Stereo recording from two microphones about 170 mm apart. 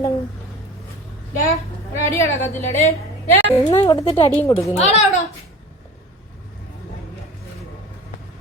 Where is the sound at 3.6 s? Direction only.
25° left (ahead or behind).